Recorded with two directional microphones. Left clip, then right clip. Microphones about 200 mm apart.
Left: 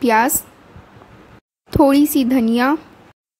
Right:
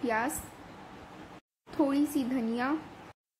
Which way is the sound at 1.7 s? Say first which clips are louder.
Left 15 dB; 50° left (ahead or behind).